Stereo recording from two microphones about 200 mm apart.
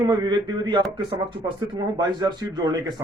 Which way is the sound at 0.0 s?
20° right (ahead or behind).